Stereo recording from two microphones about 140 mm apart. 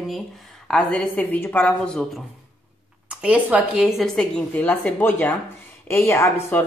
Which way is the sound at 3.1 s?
10° right (ahead or behind).